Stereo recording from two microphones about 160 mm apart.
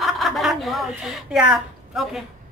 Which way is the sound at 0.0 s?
Centre (ahead or behind).